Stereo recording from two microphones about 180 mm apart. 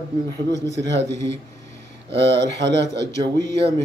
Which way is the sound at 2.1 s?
75° right (ahead or behind).